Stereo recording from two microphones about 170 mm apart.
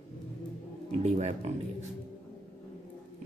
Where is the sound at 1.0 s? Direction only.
40° right (ahead or behind).